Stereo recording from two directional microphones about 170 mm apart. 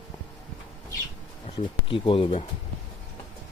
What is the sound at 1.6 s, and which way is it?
Speech, 30° left (ahead or behind).